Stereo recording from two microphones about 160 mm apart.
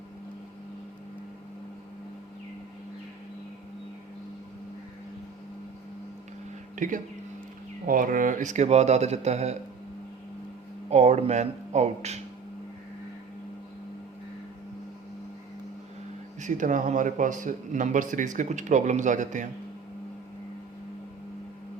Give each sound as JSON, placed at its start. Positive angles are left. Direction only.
{"t": 6.7, "sound": "speech", "side_deg": -55}
{"t": 10.8, "sound": "speech", "side_deg": -45}
{"t": 16.4, "sound": "speech", "side_deg": -50}